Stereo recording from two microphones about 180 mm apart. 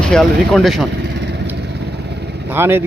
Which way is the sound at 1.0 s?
70° right (ahead or behind).